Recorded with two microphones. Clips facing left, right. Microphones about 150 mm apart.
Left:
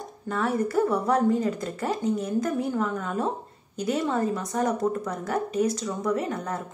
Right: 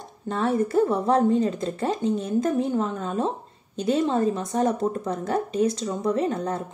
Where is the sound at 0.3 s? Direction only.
25° right (ahead or behind).